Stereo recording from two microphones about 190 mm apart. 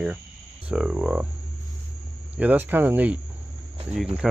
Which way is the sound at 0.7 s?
5° right (ahead or behind).